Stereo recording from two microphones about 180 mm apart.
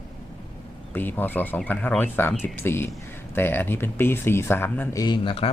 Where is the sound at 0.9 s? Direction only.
10° left (ahead or behind).